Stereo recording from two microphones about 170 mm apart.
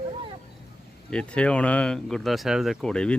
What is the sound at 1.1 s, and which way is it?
Speech, 5° left (ahead or behind).